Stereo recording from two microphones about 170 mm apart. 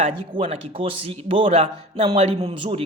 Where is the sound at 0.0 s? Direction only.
30° right (ahead or behind).